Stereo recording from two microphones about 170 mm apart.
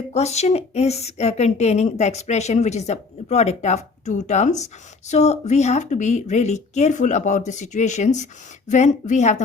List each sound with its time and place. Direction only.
0.1 s a woman's voice: 40° left (ahead or behind)